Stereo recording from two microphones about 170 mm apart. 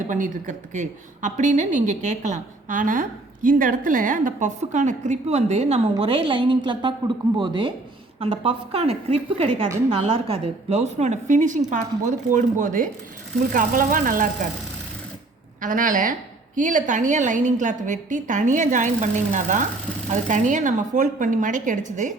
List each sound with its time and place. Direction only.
0.1 s a woman's voice: 45° right (ahead or behind)
15.6 s a woman's voice: 50° right (ahead or behind)